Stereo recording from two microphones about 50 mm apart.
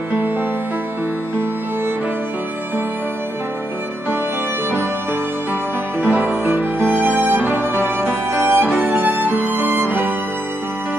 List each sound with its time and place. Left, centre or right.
6.0 s music: right